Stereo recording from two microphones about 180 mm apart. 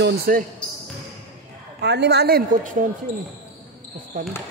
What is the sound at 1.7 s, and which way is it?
A woman's voice, 70° right (ahead or behind).